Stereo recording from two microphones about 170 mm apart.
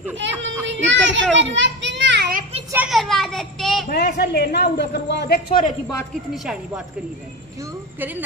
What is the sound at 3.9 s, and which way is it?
A woman's voice, 75° left (ahead or behind).